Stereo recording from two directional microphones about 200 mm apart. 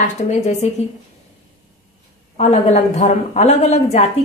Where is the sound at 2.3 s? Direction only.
35° left (ahead or behind).